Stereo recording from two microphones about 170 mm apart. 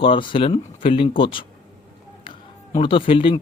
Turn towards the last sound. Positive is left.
turn(degrees=30)  # may be behind; listen again after turning